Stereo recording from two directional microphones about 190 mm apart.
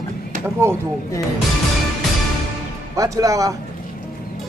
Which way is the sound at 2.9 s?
15° right (ahead or behind).